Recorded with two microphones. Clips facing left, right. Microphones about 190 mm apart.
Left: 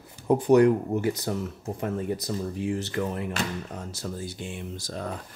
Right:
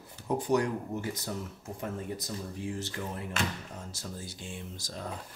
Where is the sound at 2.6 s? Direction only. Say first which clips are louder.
Left 8 dB; 70° left (ahead or behind).